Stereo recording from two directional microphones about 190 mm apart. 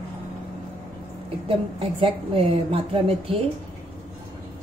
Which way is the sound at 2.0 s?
30° right (ahead or behind).